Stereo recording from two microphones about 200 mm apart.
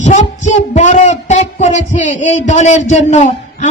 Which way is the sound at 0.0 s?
35° left (ahead or behind).